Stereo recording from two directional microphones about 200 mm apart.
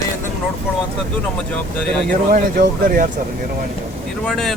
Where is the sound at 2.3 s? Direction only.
45° right (ahead or behind).